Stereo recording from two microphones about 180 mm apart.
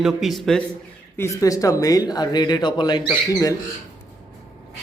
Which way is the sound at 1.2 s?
20° left (ahead or behind).